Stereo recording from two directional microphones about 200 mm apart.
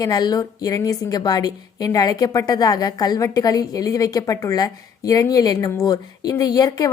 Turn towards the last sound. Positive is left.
turn(degrees=20)  # may be behind; listen again after turning